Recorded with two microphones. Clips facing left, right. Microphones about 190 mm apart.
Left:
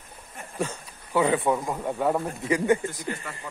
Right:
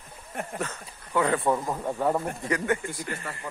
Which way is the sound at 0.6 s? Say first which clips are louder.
Left 3 dB; 10° left (ahead or behind).